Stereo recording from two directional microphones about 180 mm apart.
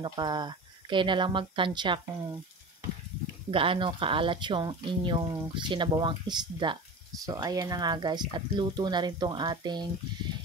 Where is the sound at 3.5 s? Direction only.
30° right (ahead or behind).